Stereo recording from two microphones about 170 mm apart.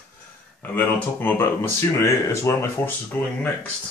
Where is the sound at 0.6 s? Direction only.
10° left (ahead or behind).